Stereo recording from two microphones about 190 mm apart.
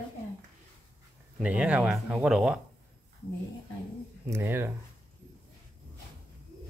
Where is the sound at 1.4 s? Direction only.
5° right (ahead or behind).